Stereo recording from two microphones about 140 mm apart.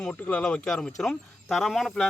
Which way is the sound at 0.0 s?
5° left (ahead or behind).